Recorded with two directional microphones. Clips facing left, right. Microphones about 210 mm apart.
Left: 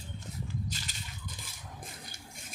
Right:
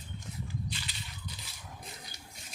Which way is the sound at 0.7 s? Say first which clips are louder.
Even; 45° left (ahead or behind).